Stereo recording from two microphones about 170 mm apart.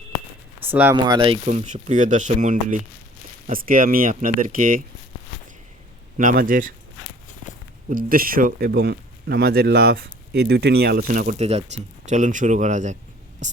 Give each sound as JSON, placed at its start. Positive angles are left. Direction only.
{"t": 0.7, "sound": "speech", "side_deg": -10}
{"t": 1.0, "sound": "speech", "side_deg": -30}
{"t": 1.5, "sound": "speech", "side_deg": -45}
{"t": 6.1, "sound": "speech", "side_deg": -55}
{"t": 7.9, "sound": "speech", "side_deg": -55}
{"t": 11.1, "sound": "speech", "side_deg": -50}